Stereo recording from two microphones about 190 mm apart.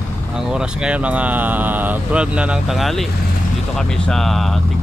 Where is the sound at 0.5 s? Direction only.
5° right (ahead or behind).